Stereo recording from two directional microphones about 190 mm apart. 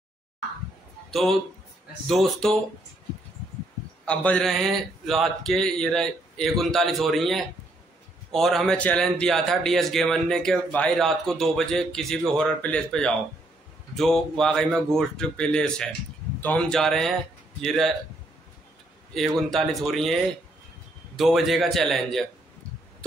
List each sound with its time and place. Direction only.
2.0 s speech: centre (ahead or behind)
4.0 s speech: 5° left (ahead or behind)
19.1 s speech: centre (ahead or behind)
21.2 s speech: centre (ahead or behind)